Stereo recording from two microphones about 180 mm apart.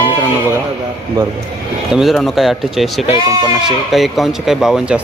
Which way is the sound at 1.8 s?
Centre (ahead or behind).